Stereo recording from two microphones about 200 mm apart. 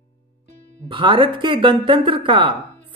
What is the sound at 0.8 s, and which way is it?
Speech, 25° right (ahead or behind).